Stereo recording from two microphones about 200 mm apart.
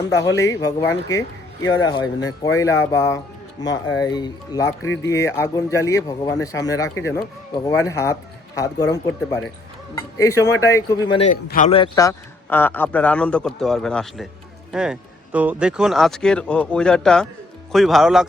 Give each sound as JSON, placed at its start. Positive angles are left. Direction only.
{"t": 0.1, "sound": "speech", "side_deg": 15}
{"t": 11.4, "sound": "a man's voice", "side_deg": 40}
{"t": 11.7, "sound": "speech", "side_deg": 20}